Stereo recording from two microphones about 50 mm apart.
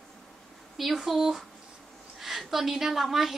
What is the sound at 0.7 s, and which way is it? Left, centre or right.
A woman's voice, centre.